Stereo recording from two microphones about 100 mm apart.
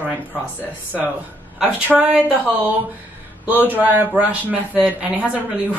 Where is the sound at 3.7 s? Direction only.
20° right (ahead or behind).